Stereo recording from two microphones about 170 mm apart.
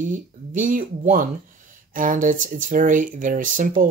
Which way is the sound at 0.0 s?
50° right (ahead or behind).